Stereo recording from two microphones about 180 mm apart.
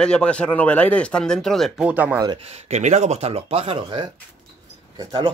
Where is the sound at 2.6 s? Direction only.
40° right (ahead or behind).